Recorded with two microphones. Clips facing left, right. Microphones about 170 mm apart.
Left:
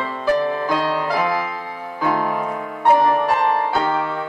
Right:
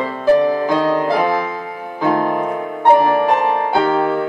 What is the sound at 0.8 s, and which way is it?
Music, 50° right (ahead or behind).